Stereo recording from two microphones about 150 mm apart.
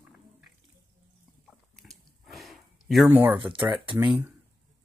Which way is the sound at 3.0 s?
10° right (ahead or behind).